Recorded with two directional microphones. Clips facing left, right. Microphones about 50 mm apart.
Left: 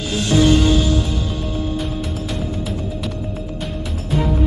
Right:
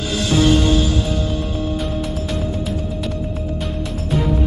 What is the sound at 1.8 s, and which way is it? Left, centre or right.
Music, centre.